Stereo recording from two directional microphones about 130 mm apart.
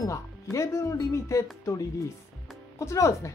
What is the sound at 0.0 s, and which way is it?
Speech, 25° left (ahead or behind).